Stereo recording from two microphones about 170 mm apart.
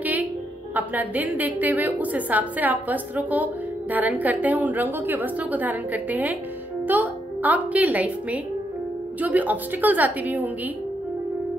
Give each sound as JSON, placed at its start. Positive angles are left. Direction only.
{"t": 0.7, "sound": "a woman's voice", "side_deg": -10}